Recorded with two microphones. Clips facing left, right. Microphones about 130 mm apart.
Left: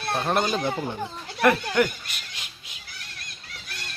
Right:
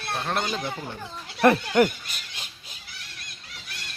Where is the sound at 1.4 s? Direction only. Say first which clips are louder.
Right 2 dB; 25° right (ahead or behind).